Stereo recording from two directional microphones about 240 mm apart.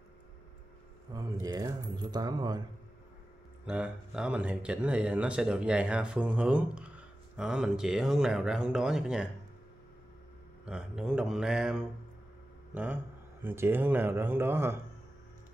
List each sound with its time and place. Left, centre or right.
1.1 s speech: centre
3.6 s speech: centre
10.7 s speech: centre